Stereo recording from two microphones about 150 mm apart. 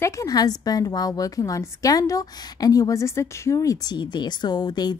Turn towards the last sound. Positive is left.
turn(degrees=30)  # may be behind; listen again after turning